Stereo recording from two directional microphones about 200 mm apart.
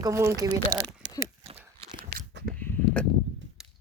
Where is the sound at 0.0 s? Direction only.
15° right (ahead or behind).